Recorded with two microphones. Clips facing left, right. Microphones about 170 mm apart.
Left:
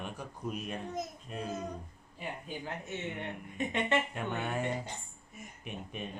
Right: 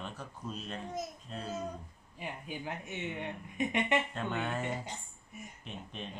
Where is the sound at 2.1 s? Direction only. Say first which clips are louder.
Left 1 dB; 15° right (ahead or behind).